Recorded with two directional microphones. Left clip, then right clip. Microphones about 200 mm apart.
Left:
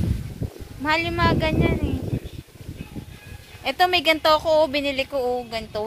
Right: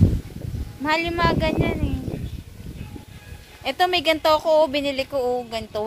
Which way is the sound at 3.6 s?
Centre (ahead or behind).